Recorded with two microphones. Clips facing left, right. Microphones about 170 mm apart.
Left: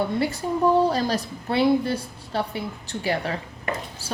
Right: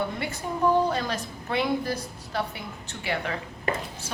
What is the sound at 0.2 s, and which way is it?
A woman's voice, 30° left (ahead or behind).